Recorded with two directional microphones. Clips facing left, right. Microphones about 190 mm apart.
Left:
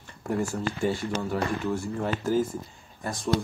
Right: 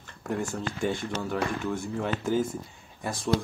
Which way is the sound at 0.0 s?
10° left (ahead or behind).